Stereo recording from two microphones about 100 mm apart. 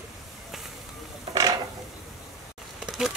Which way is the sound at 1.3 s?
35° right (ahead or behind).